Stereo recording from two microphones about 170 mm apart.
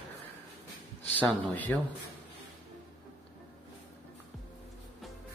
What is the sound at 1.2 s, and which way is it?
Speech, 10° left (ahead or behind).